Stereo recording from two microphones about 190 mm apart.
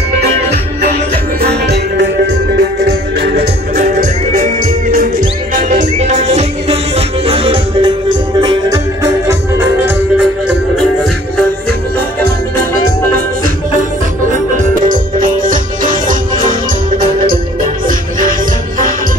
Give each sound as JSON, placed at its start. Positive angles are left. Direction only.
{"t": 1.4, "sound": "music", "side_deg": -60}
{"t": 14.9, "sound": "music", "side_deg": -45}